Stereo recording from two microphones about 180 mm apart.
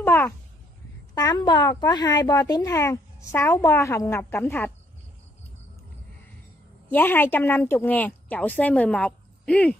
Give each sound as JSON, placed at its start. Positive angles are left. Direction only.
{"t": 0.0, "sound": "a sound", "side_deg": 10}
{"t": 1.1, "sound": "a woman's voice", "side_deg": 20}
{"t": 6.9, "sound": "a woman's voice", "side_deg": 10}